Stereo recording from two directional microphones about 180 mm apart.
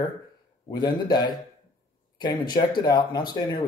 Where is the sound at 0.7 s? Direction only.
25° left (ahead or behind).